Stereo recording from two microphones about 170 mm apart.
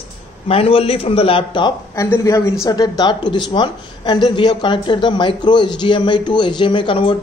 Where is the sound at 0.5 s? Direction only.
35° left (ahead or behind).